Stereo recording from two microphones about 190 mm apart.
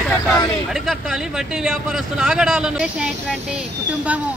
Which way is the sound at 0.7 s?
Centre (ahead or behind).